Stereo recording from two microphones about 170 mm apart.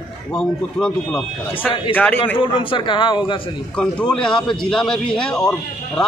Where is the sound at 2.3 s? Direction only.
30° left (ahead or behind).